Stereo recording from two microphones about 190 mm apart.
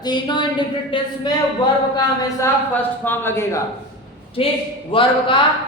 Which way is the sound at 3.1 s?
15° left (ahead or behind).